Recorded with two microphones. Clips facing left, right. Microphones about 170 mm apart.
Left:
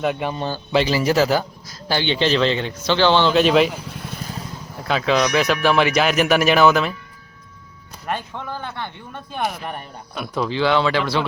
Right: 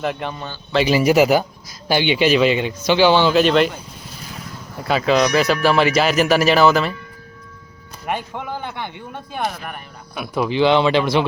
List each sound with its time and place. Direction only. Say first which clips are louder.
0.0 s speech: left 2 dB; 5° left (ahead or behind)
0.9 s speech: right 7 dB; 15° right (ahead or behind); by 3.7 s centre (ahead or behind)
4.8 s speech: right 2 dB; 5° right (ahead or behind)
8.0 s speech: right 2 dB; 10° right (ahead or behind)